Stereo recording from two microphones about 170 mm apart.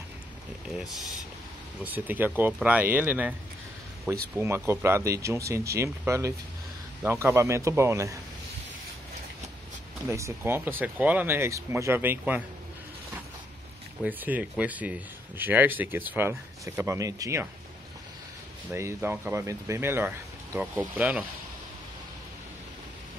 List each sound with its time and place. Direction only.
1.8 s speech: 10° right (ahead or behind)
10.0 s speech: 15° right (ahead or behind)
14.0 s speech: 10° right (ahead or behind)
18.7 s speech: 15° right (ahead or behind)